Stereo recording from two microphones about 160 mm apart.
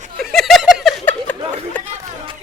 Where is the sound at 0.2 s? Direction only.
Centre (ahead or behind).